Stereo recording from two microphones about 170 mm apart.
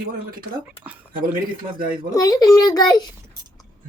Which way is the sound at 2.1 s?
20° left (ahead or behind).